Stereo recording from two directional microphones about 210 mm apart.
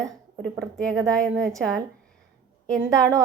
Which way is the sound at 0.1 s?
Centre (ahead or behind).